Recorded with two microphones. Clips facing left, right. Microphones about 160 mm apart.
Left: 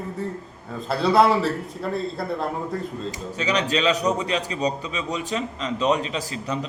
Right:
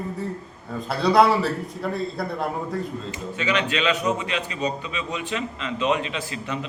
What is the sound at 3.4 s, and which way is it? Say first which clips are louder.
A man's voice: left 1 dB; 40° left (ahead or behind).